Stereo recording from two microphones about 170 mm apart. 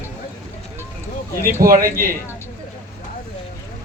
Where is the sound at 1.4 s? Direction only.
15° right (ahead or behind).